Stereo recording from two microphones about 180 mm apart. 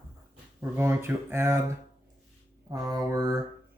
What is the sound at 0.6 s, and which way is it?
Speech, 15° right (ahead or behind).